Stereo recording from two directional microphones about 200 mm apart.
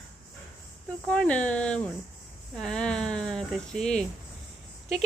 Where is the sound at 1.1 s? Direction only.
5° left (ahead or behind).